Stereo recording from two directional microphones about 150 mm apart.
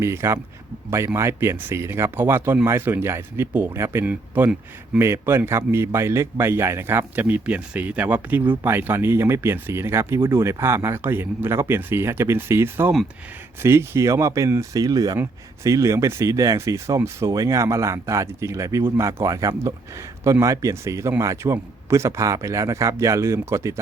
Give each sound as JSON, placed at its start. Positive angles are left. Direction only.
{"t": 0.0, "sound": "a man's voice", "side_deg": -15}